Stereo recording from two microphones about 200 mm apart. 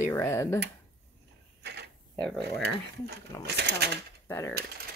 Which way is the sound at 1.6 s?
55° right (ahead or behind).